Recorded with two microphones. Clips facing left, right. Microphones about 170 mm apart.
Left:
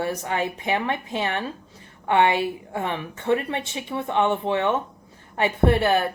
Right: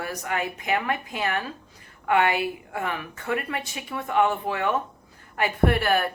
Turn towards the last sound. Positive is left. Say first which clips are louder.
# left 3 dB
turn(degrees=25)  # may be behind; listen again after turning